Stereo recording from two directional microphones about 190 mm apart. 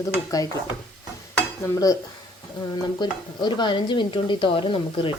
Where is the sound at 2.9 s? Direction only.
25° left (ahead or behind).